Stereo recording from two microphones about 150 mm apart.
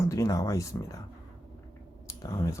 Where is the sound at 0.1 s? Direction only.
20° left (ahead or behind).